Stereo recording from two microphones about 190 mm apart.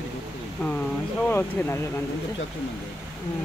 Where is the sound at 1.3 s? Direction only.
10° left (ahead or behind).